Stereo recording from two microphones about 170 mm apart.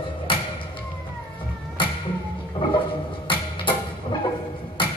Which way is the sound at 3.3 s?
30° left (ahead or behind).